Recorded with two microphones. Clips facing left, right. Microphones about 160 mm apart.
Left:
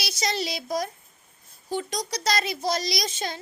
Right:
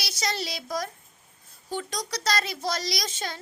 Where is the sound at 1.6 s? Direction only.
15° left (ahead or behind).